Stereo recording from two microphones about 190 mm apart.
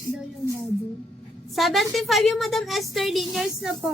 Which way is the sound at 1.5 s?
Centre (ahead or behind).